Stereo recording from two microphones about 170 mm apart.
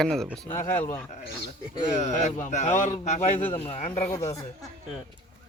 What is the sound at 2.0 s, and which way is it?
Speech, 40° left (ahead or behind).